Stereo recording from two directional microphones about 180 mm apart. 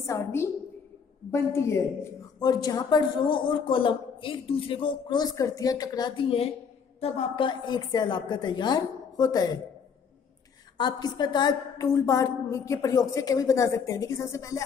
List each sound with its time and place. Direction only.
0.0 s a woman's voice: 15° left (ahead or behind)
10.8 s a woman's voice: 25° left (ahead or behind)